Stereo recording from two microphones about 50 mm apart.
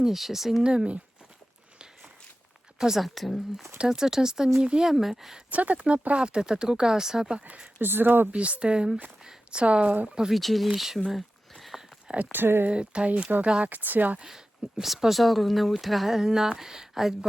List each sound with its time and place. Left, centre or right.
0.0 s speech: centre
0.6 s speech: centre
2.7 s speech: centre
3.8 s speech: centre
4.9 s speech: centre
5.5 s speech: right; by 7.4 s centre
7.8 s speech: right
8.3 s speech: right
10.3 s speech: centre
11.1 s a sound: centre
12.3 s speech: right
12.6 s speech: centre
13.7 s speech: right
14.2 s speech: centre